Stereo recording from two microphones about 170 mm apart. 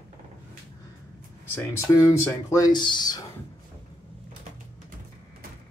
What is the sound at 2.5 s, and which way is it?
Speech, 25° left (ahead or behind).